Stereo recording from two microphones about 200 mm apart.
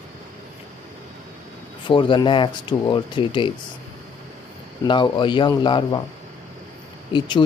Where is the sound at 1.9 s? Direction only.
25° left (ahead or behind).